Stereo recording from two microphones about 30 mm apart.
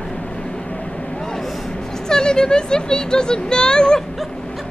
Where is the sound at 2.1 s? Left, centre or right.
Left.